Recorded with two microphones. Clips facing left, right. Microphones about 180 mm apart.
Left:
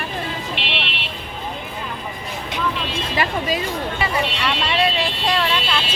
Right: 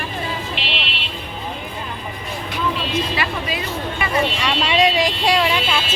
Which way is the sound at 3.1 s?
45° left (ahead or behind).